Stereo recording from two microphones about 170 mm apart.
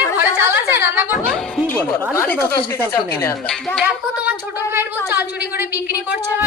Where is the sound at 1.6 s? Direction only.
10° left (ahead or behind).